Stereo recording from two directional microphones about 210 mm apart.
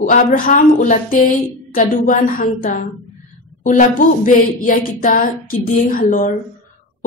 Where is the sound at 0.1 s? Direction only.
40° left (ahead or behind).